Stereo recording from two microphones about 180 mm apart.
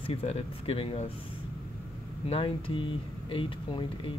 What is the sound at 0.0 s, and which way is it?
Speech, 35° left (ahead or behind).